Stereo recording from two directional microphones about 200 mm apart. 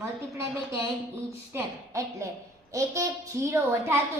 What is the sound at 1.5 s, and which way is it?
Speech, 15° right (ahead or behind).